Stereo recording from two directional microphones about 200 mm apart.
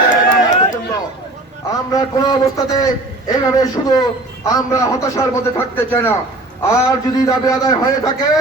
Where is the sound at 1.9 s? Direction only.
20° left (ahead or behind).